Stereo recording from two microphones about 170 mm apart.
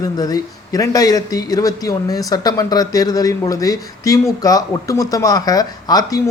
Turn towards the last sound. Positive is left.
turn(degrees=20)  # may be behind; listen again after turning